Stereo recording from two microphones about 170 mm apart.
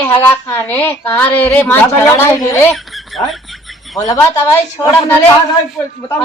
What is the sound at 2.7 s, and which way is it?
Chicken, centre (ahead or behind).